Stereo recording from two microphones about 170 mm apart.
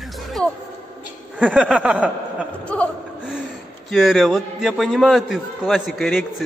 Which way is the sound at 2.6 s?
5° left (ahead or behind).